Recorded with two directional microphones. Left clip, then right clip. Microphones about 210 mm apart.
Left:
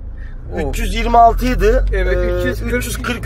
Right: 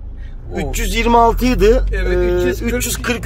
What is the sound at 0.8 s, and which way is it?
Speech, 45° right (ahead or behind).